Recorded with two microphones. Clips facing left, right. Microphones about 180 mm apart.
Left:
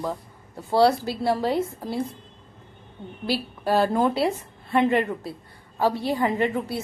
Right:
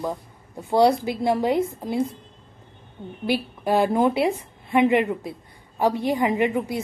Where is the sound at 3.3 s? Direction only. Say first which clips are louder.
Right 2 dB; 15° right (ahead or behind).